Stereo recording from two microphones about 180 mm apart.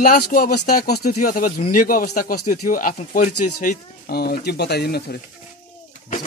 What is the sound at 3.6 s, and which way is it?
Speech, 60° left (ahead or behind).